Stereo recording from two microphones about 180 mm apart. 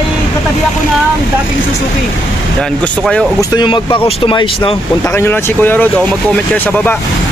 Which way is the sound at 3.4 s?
25° left (ahead or behind).